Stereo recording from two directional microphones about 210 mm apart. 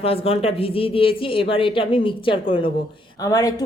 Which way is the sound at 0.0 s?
25° left (ahead or behind).